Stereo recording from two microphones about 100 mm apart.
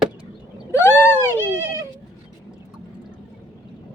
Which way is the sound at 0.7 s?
25° left (ahead or behind).